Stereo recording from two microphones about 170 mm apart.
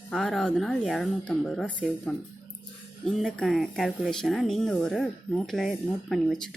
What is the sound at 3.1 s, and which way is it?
Speech, centre (ahead or behind).